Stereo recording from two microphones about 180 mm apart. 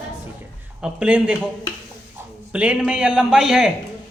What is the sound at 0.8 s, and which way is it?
Speech, 5° right (ahead or behind).